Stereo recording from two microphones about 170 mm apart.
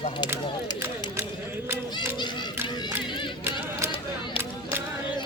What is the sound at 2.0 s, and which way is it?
Children playing, 25° left (ahead or behind).